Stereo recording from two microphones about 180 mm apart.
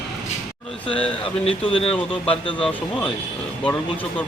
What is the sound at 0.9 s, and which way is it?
Speech, 5° left (ahead or behind).